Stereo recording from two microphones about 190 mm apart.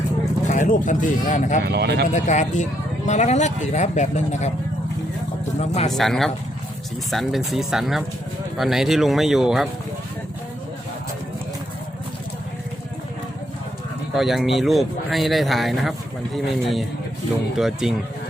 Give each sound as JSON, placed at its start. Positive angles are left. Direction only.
{"t": 0.4, "sound": "speech", "side_deg": 40}
{"t": 1.6, "sound": "speech", "side_deg": -60}
{"t": 2.1, "sound": "speech", "side_deg": 40}
{"t": 5.5, "sound": "speech", "side_deg": 35}
{"t": 5.9, "sound": "speech", "side_deg": 0}
{"t": 14.2, "sound": "speech", "side_deg": 0}